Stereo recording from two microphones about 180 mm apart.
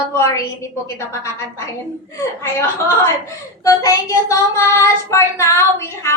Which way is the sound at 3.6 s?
20° left (ahead or behind).